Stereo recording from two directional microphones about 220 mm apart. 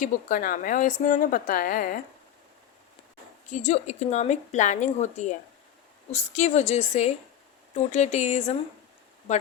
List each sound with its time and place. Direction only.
0.0 s a woman's voice: 40° left (ahead or behind)
3.4 s a woman's voice: 30° left (ahead or behind)